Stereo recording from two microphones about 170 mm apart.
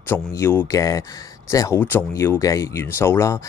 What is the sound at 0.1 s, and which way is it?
Speech, 15° left (ahead or behind).